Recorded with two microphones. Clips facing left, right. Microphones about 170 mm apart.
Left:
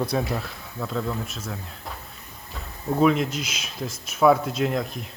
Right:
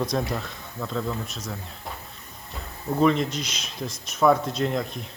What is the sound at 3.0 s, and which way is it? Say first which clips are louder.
Speech: left 1 dB; 5° left (ahead or behind).